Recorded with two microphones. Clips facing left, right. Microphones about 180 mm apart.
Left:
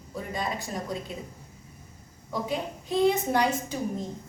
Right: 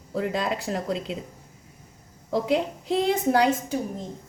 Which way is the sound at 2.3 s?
90° right.